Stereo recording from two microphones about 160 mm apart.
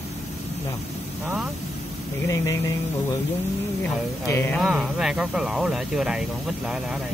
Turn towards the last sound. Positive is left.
turn(degrees=-5)  # may be behind; listen again after turning